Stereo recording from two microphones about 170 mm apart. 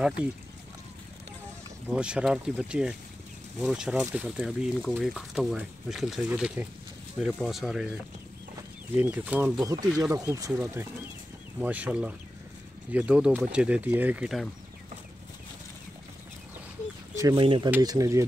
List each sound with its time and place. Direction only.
1.9 s speech: 5° right (ahead or behind)
8.9 s speech: 10° right (ahead or behind)
9.8 s speech: 5° right (ahead or behind)
10.1 s speech: 20° right (ahead or behind); by 14.5 s 5° right (ahead or behind)
17.1 s bird: 20° right (ahead or behind)
17.4 s speech: 30° right (ahead or behind)
17.8 s speech: 20° right (ahead or behind)